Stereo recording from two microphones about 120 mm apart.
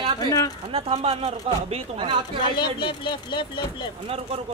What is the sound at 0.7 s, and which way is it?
Speech, 55° right (ahead or behind).